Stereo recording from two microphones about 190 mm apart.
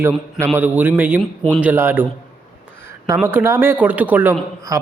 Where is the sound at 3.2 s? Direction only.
10° right (ahead or behind).